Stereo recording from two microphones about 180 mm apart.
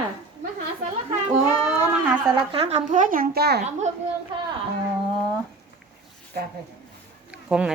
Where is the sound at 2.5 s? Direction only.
35° right (ahead or behind); by 3.6 s 60° right (ahead or behind).